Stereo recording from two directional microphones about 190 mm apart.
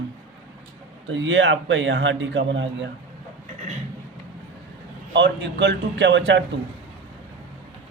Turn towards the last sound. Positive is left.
turn(degrees=-70)  # may be behind; listen again after turning